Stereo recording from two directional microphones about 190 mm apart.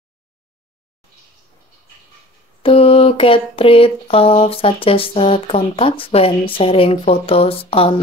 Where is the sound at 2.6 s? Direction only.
30° left (ahead or behind).